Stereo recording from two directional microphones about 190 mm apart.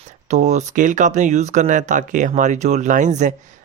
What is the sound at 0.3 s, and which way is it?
Speech, 40° right (ahead or behind).